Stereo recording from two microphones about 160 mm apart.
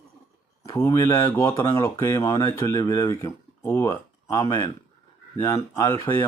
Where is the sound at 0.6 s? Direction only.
20° left (ahead or behind).